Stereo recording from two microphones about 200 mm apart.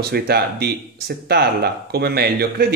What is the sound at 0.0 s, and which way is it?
Speech, 50° right (ahead or behind).